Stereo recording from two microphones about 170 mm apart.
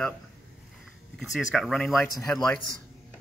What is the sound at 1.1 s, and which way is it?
Speech, centre (ahead or behind).